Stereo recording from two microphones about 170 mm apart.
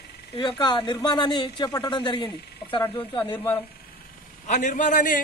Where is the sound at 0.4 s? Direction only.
25° left (ahead or behind).